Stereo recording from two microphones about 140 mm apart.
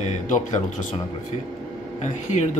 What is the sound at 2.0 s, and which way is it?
Speech, 60° left (ahead or behind).